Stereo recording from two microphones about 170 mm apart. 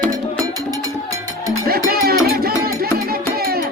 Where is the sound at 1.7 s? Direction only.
65° right (ahead or behind).